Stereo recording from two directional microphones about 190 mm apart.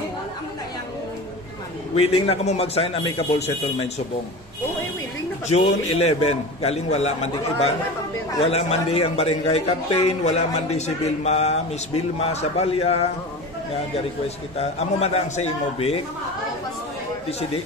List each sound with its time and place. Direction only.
2.0 s a man's voice: 30° left (ahead or behind)
5.5 s a man's voice: 35° left (ahead or behind)
14.6 s a man's voice: 35° left (ahead or behind)